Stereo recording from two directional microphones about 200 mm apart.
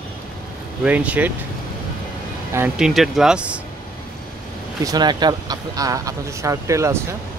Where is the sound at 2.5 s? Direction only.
10° right (ahead or behind).